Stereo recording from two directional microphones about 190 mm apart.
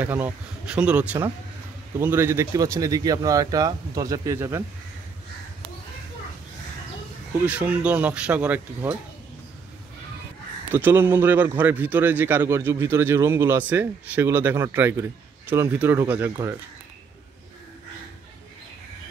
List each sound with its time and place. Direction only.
0.0 s a man's voice: 10° right (ahead or behind)
7.4 s a man's voice: 10° right (ahead or behind)
10.7 s a man's voice: 10° right (ahead or behind)